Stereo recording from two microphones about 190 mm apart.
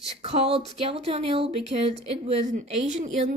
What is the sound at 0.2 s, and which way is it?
A woman's voice, 30° right (ahead or behind).